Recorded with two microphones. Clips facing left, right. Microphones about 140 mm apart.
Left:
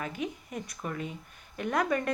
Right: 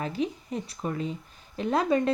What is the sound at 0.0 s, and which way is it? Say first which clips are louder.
A woman's voice: right 5 dB; 30° right (ahead or behind).